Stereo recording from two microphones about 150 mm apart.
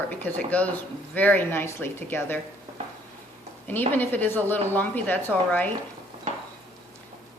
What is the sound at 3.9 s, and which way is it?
Speech, 15° left (ahead or behind).